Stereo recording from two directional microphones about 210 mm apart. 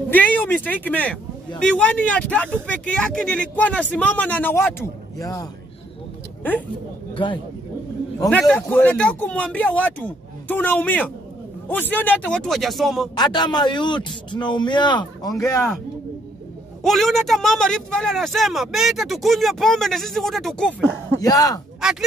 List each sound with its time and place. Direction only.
0.1 s speech: 10° left (ahead or behind)
8.3 s speech: 5° left (ahead or behind)
13.1 s a man's voice: 20° left (ahead or behind)
16.8 s speech: centre (ahead or behind)
21.2 s speech: 15° left (ahead or behind)